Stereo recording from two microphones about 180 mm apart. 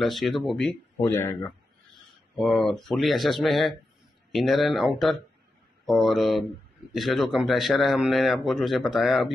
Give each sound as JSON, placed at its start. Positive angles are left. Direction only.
{"t": 0.0, "sound": "speech", "side_deg": 0}
{"t": 1.0, "sound": "speech", "side_deg": 15}
{"t": 2.0, "sound": "speech", "side_deg": 0}